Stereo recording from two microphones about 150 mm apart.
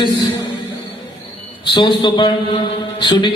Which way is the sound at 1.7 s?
35° left (ahead or behind).